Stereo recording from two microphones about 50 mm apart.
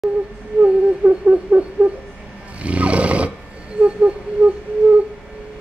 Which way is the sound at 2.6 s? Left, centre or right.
Right.